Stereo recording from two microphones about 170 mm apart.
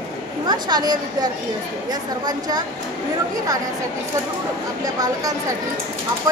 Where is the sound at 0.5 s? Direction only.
25° right (ahead or behind).